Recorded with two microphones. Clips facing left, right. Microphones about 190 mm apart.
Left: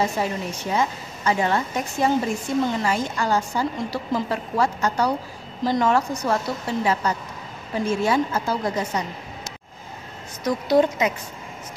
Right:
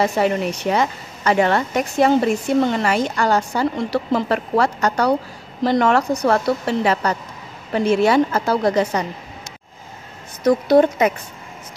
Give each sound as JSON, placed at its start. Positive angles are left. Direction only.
{"t": 0.0, "sound": "a woman's voice", "side_deg": -70}
{"t": 10.4, "sound": "a woman's voice", "side_deg": -60}